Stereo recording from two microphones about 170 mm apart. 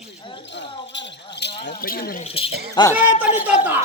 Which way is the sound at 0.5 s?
90° left.